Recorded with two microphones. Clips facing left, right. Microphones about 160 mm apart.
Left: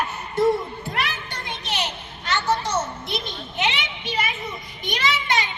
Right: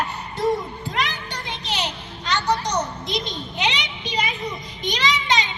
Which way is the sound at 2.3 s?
20° right (ahead or behind).